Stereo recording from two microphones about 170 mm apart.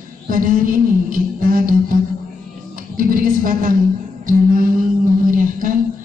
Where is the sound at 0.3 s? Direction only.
55° right (ahead or behind).